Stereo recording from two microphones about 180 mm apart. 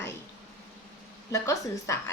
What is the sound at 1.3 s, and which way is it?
Speech, 15° left (ahead or behind).